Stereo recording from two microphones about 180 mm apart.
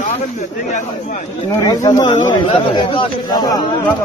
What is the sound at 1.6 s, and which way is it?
Speech, 20° left (ahead or behind).